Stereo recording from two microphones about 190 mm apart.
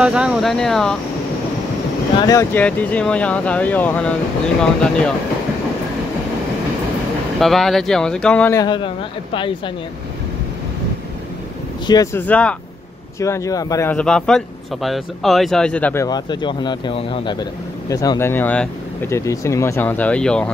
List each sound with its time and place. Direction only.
0.0 s speech: 5° right (ahead or behind)
2.1 s speech: 20° left (ahead or behind)
7.3 s speech: centre (ahead or behind)
8.6 s speech: 25° left (ahead or behind)
11.8 s speech: 20° left (ahead or behind)
12.3 s speech: 5° left (ahead or behind)
13.2 s speech: 15° left (ahead or behind)